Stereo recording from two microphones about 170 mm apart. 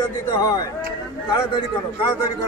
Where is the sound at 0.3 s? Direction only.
25° left (ahead or behind).